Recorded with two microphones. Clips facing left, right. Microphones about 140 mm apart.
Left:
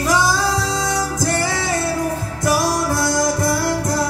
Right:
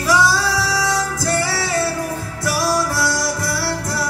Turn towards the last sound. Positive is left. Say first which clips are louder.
# left 4 dB
turn(degrees=20)  # may be behind; listen again after turning